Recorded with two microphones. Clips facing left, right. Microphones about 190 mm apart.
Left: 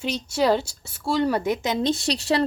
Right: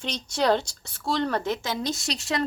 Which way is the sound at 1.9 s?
30° left (ahead or behind).